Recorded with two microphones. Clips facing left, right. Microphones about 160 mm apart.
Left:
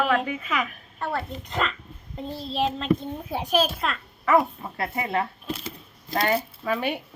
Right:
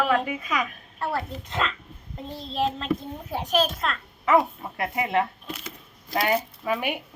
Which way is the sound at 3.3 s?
10° left (ahead or behind).